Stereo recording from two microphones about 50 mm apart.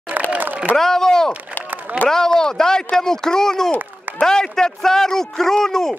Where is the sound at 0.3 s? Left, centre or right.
Right.